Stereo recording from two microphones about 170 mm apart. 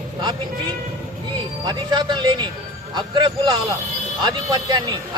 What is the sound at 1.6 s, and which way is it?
Speech, 25° right (ahead or behind).